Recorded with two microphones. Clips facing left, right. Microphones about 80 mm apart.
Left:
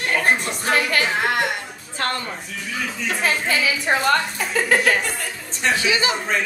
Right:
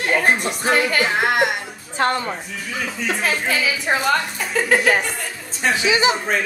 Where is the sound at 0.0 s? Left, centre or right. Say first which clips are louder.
Right 3 dB; centre.